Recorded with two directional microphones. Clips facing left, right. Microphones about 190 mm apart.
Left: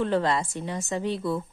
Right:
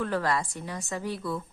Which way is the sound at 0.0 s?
25° left (ahead or behind).